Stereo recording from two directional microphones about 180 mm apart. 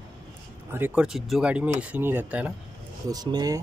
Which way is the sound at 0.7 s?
10° right (ahead or behind).